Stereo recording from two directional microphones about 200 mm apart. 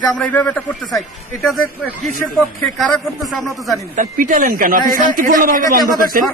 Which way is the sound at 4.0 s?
40° right (ahead or behind).